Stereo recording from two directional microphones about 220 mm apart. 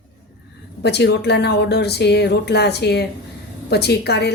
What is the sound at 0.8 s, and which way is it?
A woman's voice, 50° left (ahead or behind).